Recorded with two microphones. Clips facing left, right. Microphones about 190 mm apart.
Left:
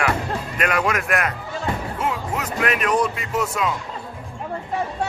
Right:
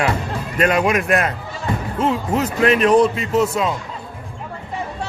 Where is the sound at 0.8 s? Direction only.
20° right (ahead or behind).